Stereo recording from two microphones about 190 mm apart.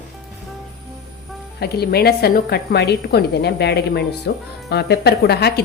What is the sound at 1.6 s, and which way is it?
A woman's voice, 55° left (ahead or behind).